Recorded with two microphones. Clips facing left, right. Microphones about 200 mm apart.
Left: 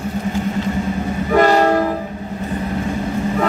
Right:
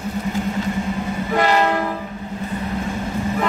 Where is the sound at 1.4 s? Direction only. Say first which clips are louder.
Left 5 dB; 40° left (ahead or behind).